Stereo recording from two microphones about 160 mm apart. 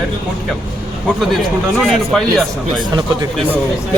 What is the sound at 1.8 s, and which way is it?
Speech, centre (ahead or behind).